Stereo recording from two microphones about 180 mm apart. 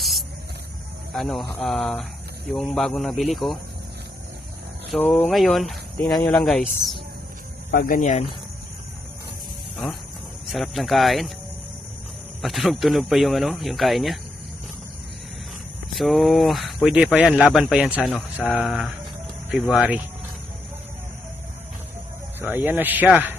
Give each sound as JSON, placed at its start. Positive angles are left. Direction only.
{"t": 0.0, "sound": "spray", "side_deg": 0}
{"t": 1.1, "sound": "speech", "side_deg": 0}
{"t": 4.9, "sound": "speech", "side_deg": 5}
{"t": 7.7, "sound": "speech", "side_deg": 55}
{"t": 10.5, "sound": "speech", "side_deg": 0}
{"t": 12.4, "sound": "speech", "side_deg": 0}
{"t": 16.0, "sound": "speech", "side_deg": 0}
{"t": 22.4, "sound": "speech", "side_deg": -10}